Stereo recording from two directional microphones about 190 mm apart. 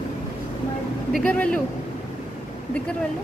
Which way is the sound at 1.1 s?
5° left (ahead or behind).